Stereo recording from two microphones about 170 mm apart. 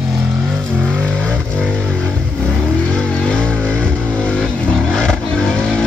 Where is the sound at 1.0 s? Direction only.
5° left (ahead or behind).